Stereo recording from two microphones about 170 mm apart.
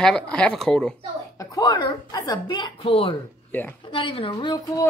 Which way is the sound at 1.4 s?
20° left (ahead or behind).